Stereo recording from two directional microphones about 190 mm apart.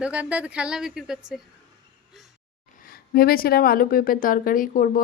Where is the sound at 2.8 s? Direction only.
50° left (ahead or behind).